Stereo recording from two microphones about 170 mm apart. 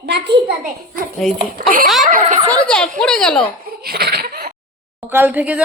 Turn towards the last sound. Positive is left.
turn(degrees=-10)  # may be behind; listen again after turning